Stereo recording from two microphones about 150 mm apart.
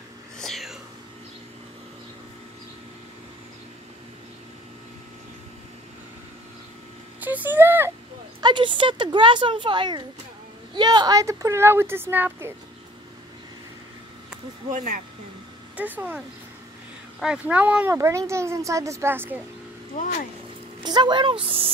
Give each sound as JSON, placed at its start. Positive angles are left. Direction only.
{"t": 0.4, "sound": "whispering", "side_deg": 0}
{"t": 7.2, "sound": "speech", "side_deg": -10}
{"t": 8.4, "sound": "speech", "side_deg": -30}
{"t": 15.7, "sound": "speech", "side_deg": -10}
{"t": 17.2, "sound": "a woman's voice", "side_deg": -5}
{"t": 19.9, "sound": "speech", "side_deg": 65}
{"t": 20.8, "sound": "speech", "side_deg": -30}